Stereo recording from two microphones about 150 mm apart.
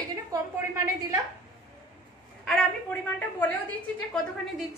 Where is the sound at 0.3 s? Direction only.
25° right (ahead or behind).